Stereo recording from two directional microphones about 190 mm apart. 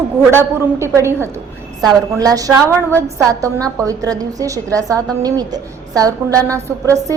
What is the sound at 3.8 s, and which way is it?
A woman's voice, 20° right (ahead or behind).